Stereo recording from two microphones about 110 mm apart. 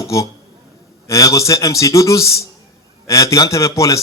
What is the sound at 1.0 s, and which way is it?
A man's voice, 30° left (ahead or behind).